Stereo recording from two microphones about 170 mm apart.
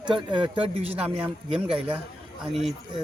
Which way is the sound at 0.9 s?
10° right (ahead or behind).